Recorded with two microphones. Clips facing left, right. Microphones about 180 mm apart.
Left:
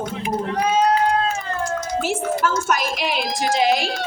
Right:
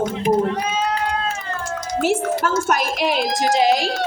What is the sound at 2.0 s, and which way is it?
Speech, 65° right (ahead or behind).